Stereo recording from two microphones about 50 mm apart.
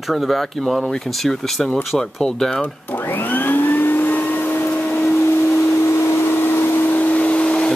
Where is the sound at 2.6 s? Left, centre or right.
Left.